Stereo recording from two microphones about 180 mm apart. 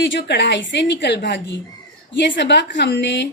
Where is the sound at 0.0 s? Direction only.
85° left.